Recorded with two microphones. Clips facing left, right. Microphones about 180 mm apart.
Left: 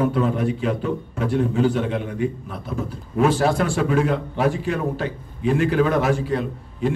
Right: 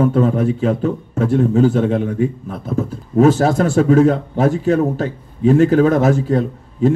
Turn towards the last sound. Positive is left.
turn(degrees=-40)  # may be behind; listen again after turning